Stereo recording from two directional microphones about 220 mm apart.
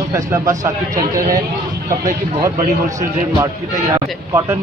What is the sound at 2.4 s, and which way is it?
A man's voice, 15° right (ahead or behind).